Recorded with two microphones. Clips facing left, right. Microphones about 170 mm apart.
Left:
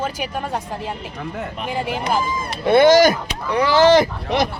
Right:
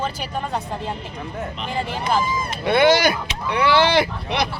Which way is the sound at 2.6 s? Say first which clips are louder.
Left 5 dB; 45° left (ahead or behind).